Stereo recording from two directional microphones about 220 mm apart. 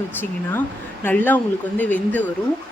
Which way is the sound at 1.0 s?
10° left (ahead or behind).